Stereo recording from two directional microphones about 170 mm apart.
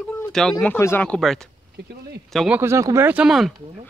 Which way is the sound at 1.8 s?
70° right (ahead or behind).